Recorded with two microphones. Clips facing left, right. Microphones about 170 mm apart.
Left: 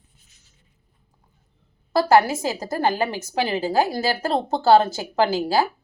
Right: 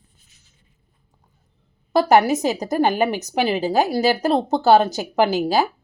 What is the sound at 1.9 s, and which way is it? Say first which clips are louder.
A woman's voice: right 2 dB; 20° right (ahead or behind).